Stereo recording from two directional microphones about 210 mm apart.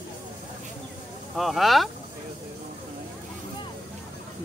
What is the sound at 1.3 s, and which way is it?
Speech, centre (ahead or behind).